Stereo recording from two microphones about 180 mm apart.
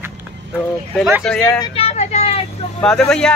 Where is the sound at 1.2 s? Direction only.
5° left (ahead or behind).